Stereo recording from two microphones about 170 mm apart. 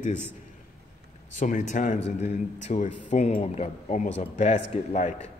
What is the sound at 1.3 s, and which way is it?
A man's voice, 45° left (ahead or behind).